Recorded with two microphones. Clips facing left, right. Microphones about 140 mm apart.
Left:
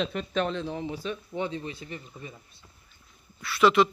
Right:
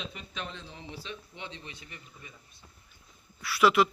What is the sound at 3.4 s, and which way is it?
Speech, 10° right (ahead or behind).